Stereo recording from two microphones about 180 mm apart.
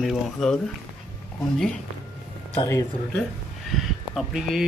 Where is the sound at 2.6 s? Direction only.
20° left (ahead or behind).